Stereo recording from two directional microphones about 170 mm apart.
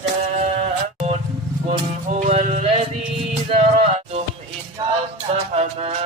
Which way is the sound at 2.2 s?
40° right (ahead or behind).